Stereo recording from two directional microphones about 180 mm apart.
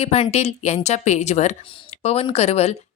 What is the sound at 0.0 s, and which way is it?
A woman's voice, 35° left (ahead or behind).